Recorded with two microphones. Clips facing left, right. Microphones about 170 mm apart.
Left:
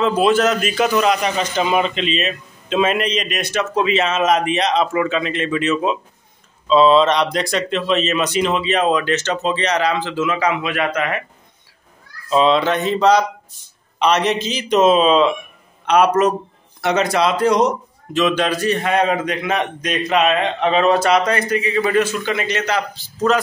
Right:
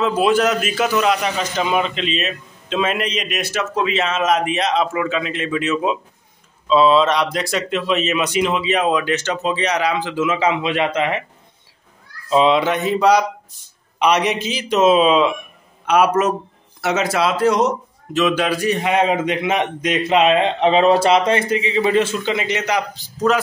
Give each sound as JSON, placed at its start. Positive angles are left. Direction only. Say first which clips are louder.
{"t": 0.0, "sound": "a man's voice", "louder": "left 1 dB", "side_deg": -5}
{"t": 12.3, "sound": "a man's voice", "louder": "even", "side_deg": -15}